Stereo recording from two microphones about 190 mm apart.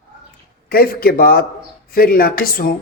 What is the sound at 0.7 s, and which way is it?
A man's voice, 55° left (ahead or behind).